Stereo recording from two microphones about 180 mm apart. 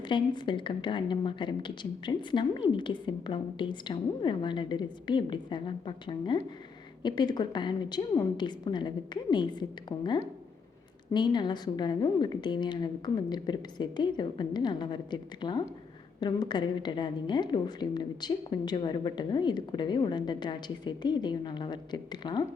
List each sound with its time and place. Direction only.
0.0 s a woman's voice: 25° left (ahead or behind)